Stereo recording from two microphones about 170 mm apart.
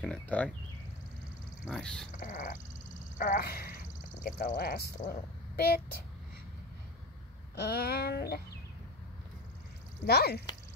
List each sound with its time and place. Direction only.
0.0 s speech: 10° left (ahead or behind)
1.7 s speech: 5° left (ahead or behind)
2.1 s crow: 50° left (ahead or behind)
3.2 s speech: 55° left (ahead or behind)
7.5 s a sound: 75° left (ahead or behind)
10.0 s a sound: 70° left (ahead or behind)